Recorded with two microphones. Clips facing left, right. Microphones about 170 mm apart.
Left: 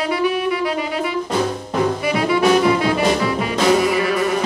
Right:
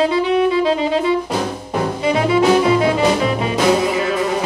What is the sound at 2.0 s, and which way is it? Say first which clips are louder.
Music: right 6 dB; 25° right (ahead or behind).